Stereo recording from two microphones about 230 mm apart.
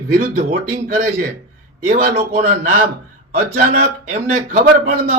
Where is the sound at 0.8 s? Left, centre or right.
Right.